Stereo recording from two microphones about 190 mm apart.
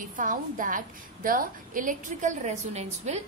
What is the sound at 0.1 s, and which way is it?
A woman's voice, 45° right (ahead or behind).